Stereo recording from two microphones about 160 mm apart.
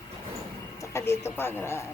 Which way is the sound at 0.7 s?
15° left (ahead or behind).